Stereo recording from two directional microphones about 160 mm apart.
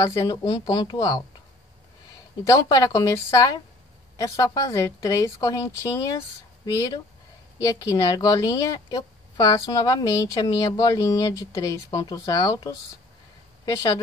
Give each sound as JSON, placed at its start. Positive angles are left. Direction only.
{"t": 0.0, "sound": "a woman's voice", "side_deg": 20}
{"t": 2.4, "sound": "a woman's voice", "side_deg": 20}